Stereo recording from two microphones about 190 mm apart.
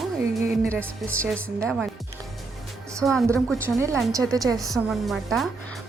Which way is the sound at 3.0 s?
Centre (ahead or behind).